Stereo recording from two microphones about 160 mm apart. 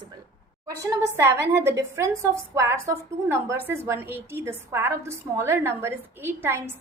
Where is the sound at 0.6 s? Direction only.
20° right (ahead or behind).